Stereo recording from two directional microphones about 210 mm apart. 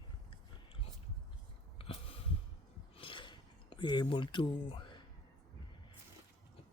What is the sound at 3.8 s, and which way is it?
Speech, 20° left (ahead or behind).